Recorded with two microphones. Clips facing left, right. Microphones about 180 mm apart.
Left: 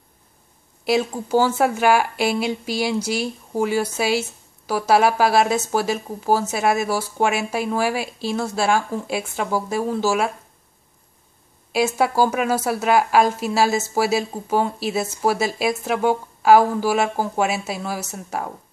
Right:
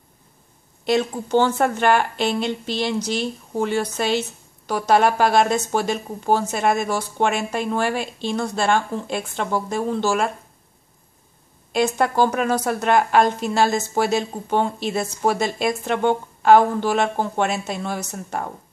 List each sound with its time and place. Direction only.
0.8 s speech: 5° left (ahead or behind)
11.7 s speech: 5° left (ahead or behind)